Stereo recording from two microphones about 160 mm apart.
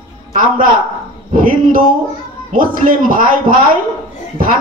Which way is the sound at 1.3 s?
60° right (ahead or behind).